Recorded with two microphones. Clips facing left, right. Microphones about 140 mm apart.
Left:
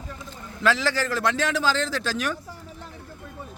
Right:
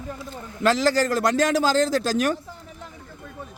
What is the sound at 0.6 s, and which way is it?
A man's voice, 40° right (ahead or behind).